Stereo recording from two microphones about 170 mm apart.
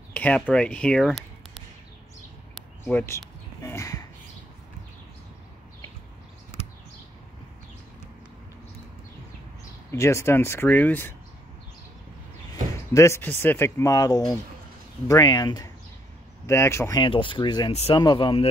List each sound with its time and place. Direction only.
0.1 s speech: 10° left (ahead or behind)
2.8 s speech: 15° left (ahead or behind)
3.6 s a sound: 20° left (ahead or behind)
9.8 s speech: 15° left (ahead or behind)
12.9 s speech: 15° left (ahead or behind)
17.0 s speech: 30° left (ahead or behind)